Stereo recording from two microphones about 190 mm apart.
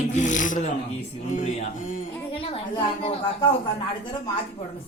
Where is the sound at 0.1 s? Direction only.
40° left (ahead or behind).